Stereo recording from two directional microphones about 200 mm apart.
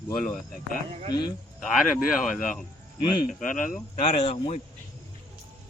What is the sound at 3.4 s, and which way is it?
A man's voice, 40° left (ahead or behind).